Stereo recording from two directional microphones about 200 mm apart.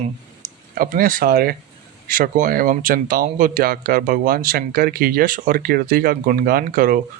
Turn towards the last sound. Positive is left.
turn(degrees=-45)  # may be behind; listen again after turning